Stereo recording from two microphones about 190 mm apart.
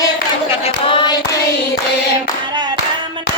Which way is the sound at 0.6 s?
25° left (ahead or behind).